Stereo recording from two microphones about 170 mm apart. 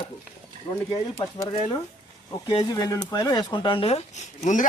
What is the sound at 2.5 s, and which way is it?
Speech, 25° left (ahead or behind).